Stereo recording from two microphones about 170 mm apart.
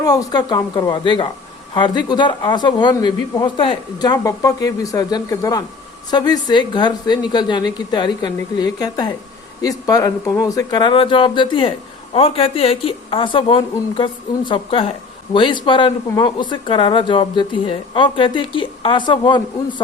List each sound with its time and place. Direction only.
0.0 s speech: 20° left (ahead or behind)